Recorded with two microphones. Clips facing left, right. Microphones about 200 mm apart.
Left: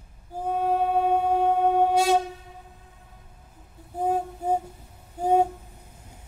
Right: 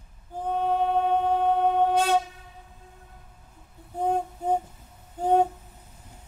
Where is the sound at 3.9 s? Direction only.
5° left (ahead or behind).